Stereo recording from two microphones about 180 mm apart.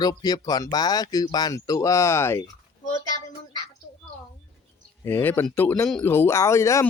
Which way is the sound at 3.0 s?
20° left (ahead or behind).